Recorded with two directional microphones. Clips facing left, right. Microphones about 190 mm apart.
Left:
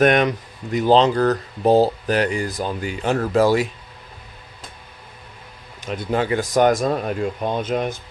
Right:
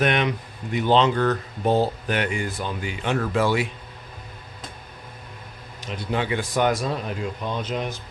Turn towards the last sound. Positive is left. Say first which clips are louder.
# left 5 dB
turn(degrees=50)  # may be behind; listen again after turning